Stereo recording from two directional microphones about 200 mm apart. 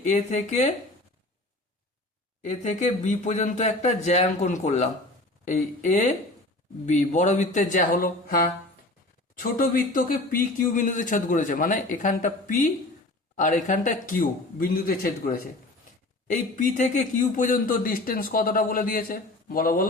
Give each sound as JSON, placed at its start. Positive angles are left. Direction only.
{"t": 0.0, "sound": "speech", "side_deg": 35}
{"t": 2.4, "sound": "speech", "side_deg": 35}